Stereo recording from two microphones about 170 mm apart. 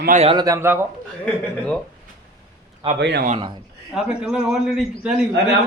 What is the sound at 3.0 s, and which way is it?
Speech, 90° right.